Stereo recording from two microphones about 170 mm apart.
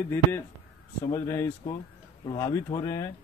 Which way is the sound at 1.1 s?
15° left (ahead or behind).